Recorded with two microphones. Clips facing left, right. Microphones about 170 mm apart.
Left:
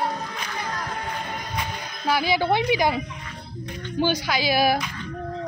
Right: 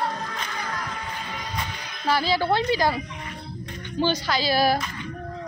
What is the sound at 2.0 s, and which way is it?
Speech, 15° left (ahead or behind).